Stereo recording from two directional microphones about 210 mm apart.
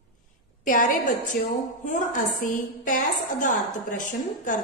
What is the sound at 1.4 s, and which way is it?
A woman's voice, 40° left (ahead or behind).